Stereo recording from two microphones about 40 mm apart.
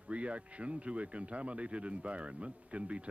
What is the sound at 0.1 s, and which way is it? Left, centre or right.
Speech, right.